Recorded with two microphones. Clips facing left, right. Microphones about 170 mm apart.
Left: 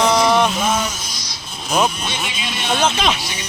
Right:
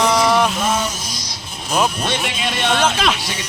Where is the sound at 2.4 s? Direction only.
65° right (ahead or behind).